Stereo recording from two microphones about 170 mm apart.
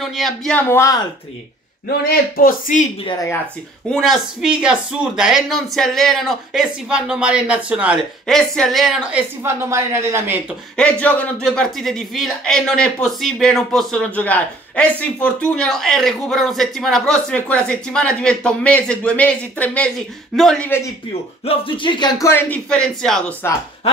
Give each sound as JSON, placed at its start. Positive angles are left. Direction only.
{"t": 0.0, "sound": "speech", "side_deg": 0}
{"t": 1.9, "sound": "a man's voice", "side_deg": 60}
{"t": 3.9, "sound": "speech", "side_deg": 0}
{"t": 9.4, "sound": "speech", "side_deg": -15}
{"t": 10.8, "sound": "speech", "side_deg": 10}
{"t": 21.5, "sound": "speech", "side_deg": 30}
{"t": 22.3, "sound": "speech", "side_deg": 5}